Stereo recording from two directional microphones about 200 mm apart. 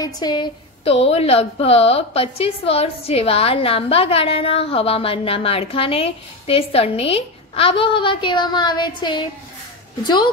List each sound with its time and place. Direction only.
0.0 s a woman's voice: 20° left (ahead or behind)